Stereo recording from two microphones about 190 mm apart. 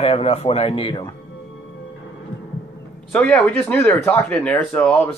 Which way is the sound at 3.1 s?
5° left (ahead or behind).